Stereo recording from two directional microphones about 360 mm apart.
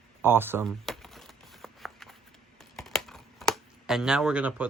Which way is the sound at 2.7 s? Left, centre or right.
Centre.